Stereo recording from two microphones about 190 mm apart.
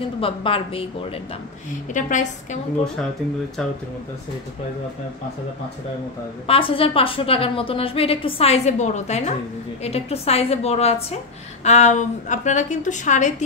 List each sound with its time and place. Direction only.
0.2 s a woman's voice: 30° left (ahead or behind)
2.0 s a woman's voice: 40° left (ahead or behind)
6.4 s a woman's voice: 30° left (ahead or behind)